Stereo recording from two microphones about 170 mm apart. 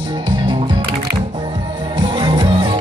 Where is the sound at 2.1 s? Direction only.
25° right (ahead or behind).